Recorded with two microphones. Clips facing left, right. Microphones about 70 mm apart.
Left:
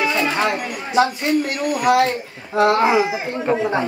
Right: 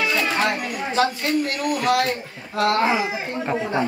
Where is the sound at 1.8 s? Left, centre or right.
Left.